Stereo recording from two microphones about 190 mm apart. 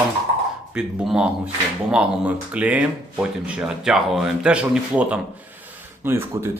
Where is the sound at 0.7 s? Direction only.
5° right (ahead or behind).